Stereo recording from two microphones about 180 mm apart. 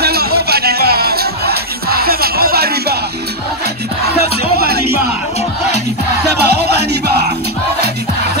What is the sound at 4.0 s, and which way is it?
Music, 60° right (ahead or behind).